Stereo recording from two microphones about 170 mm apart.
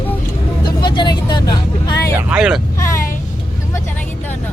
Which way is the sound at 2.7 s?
15° left (ahead or behind).